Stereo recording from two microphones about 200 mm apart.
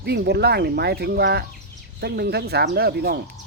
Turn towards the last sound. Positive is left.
turn(degrees=-50)  # may be behind; listen again after turning